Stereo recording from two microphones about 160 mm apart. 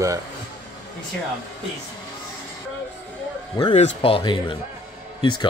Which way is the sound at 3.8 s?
35° left (ahead or behind).